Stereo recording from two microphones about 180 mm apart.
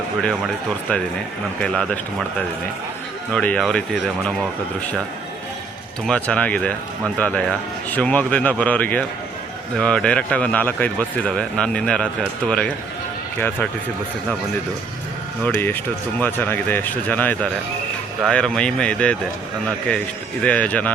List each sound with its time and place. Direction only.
0.2 s speech: centre (ahead or behind)
3.3 s speech: 5° left (ahead or behind)
6.1 s speech: 5° left (ahead or behind)
15.4 s speech: 10° left (ahead or behind)
20.4 s speech: 5° left (ahead or behind)